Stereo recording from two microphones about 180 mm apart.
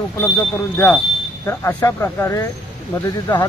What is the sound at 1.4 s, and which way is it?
Speech, 15° left (ahead or behind).